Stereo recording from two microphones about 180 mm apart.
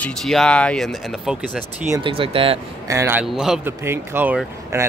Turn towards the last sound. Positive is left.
turn(degrees=-15)  # may be behind; listen again after turning